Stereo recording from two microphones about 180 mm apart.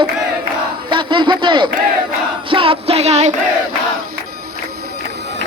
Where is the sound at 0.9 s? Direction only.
25° right (ahead or behind).